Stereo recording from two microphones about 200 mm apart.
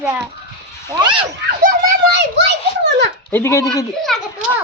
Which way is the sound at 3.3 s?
15° left (ahead or behind).